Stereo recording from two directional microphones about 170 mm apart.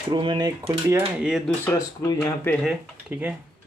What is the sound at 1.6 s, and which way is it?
Speech, 15° left (ahead or behind).